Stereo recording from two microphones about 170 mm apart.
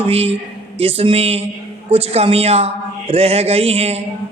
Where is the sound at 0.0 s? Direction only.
35° right (ahead or behind).